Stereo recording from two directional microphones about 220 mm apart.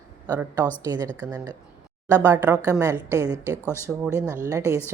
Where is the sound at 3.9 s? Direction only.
Centre (ahead or behind).